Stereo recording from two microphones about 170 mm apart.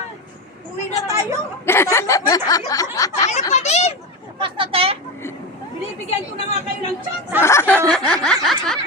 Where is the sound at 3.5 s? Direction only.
40° left (ahead or behind).